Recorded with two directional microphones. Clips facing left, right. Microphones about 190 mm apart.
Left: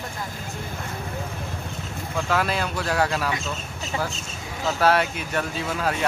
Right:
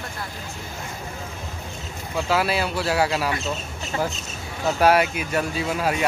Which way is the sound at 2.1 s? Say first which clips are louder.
Right 2 dB; 10° right (ahead or behind).